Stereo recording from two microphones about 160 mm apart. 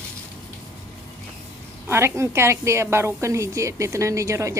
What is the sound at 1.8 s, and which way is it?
A woman's voice, 15° right (ahead or behind).